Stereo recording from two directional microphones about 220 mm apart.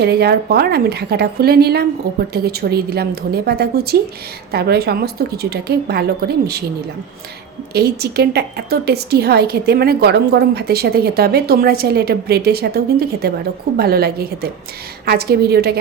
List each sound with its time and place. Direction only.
0.0 s a woman's voice: 45° right (ahead or behind)
7.7 s a woman's voice: 45° right (ahead or behind)